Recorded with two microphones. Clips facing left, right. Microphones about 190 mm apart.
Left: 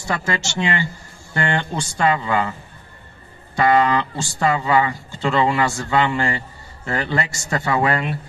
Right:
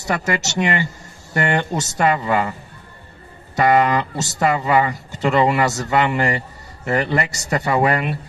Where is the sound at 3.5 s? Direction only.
20° right (ahead or behind).